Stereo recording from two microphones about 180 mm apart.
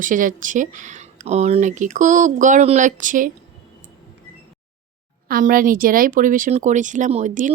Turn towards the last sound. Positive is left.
turn(degrees=-45)  # may be behind; listen again after turning